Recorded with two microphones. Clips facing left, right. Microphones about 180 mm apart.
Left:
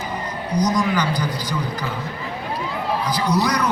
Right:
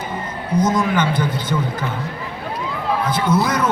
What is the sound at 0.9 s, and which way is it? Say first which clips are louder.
Speech: right 3 dB; 25° right (ahead or behind).